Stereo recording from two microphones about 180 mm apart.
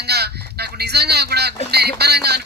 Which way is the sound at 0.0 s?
65° right (ahead or behind).